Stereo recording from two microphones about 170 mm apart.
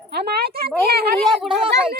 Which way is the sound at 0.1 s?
70° right (ahead or behind).